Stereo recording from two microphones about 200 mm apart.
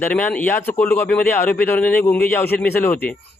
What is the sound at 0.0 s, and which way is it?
A man's voice, 5° left (ahead or behind).